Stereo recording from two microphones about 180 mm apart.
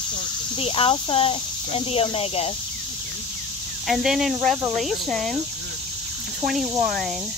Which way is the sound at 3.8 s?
Centre (ahead or behind).